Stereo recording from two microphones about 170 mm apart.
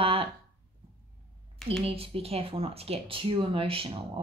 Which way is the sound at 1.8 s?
35° right (ahead or behind).